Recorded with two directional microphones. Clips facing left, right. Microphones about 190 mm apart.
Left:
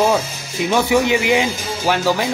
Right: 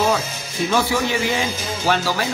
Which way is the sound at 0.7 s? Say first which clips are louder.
Left 5 dB; 15° left (ahead or behind).